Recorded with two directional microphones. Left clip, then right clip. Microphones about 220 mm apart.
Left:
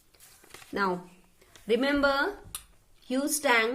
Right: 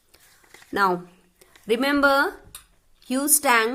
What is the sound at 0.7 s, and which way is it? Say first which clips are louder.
A woman's voice: right 8 dB; 50° right (ahead or behind).